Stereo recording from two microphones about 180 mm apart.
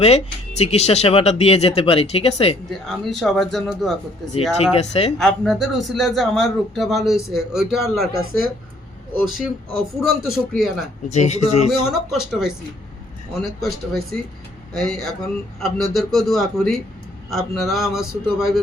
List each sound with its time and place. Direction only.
0.0 s speech: 35° left (ahead or behind)
2.6 s a man's voice: centre (ahead or behind)
4.7 s speech: 35° left (ahead or behind)
5.1 s a man's voice: 5° left (ahead or behind)
11.1 s speech: 40° left (ahead or behind)
11.9 s a man's voice: 5° right (ahead or behind)